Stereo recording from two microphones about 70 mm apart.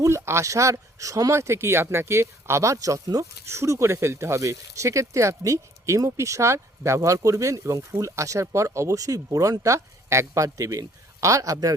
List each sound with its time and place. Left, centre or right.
0.0 s speech: right